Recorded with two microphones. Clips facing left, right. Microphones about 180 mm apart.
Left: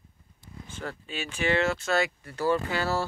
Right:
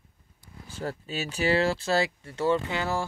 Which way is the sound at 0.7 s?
35° right (ahead or behind).